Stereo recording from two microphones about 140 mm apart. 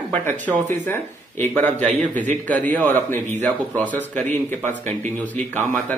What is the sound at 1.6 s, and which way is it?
Speech, 60° right (ahead or behind).